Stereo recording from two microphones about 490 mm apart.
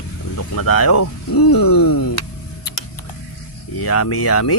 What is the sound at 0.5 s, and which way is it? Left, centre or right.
Speech, left.